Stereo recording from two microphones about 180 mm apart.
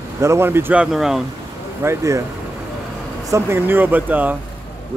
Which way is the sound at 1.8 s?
15° right (ahead or behind).